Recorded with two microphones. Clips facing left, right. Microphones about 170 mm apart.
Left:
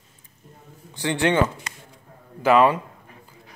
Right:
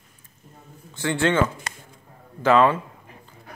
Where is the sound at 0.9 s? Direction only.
15° left (ahead or behind).